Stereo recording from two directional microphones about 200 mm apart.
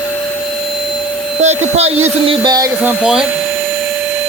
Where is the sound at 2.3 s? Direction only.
20° right (ahead or behind).